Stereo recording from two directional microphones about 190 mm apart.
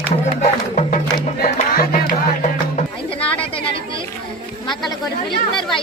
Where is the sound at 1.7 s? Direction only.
50° left (ahead or behind).